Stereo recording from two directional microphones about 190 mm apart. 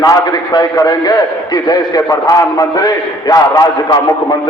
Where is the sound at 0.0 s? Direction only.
20° left (ahead or behind).